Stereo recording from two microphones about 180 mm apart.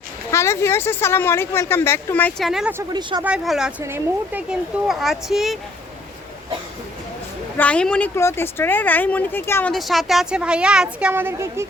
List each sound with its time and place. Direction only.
0.3 s speech: 15° left (ahead or behind)
2.5 s a woman's voice: centre (ahead or behind)
2.7 s speech: 25° right (ahead or behind)
3.2 s a woman's voice: 5° right (ahead or behind)
7.5 s speech: 10° left (ahead or behind)
9.7 s a woman's voice: centre (ahead or behind)